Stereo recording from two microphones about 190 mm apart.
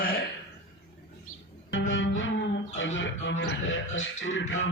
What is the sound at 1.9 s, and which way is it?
Music, 85° left.